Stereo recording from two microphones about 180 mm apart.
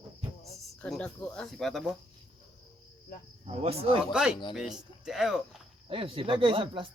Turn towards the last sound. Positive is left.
turn(degrees=-30)  # may be behind; listen again after turning